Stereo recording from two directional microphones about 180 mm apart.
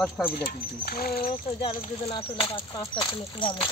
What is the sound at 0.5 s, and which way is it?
Speech, 60° left (ahead or behind).